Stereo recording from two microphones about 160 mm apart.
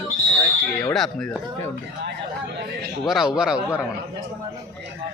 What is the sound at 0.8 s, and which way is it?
Speech, 5° left (ahead or behind).